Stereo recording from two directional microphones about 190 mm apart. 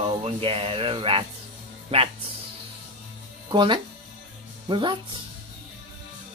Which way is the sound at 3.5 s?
25° right (ahead or behind).